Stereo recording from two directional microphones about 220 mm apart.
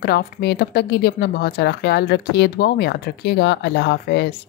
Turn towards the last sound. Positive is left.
turn(degrees=50)  # may be behind; listen again after turning